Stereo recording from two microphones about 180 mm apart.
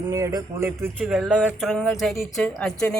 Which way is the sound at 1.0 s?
5° right (ahead or behind).